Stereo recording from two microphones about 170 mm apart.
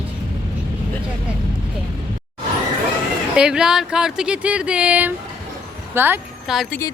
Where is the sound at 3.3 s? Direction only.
5° right (ahead or behind).